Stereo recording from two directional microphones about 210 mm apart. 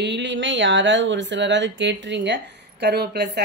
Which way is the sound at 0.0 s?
55° right (ahead or behind).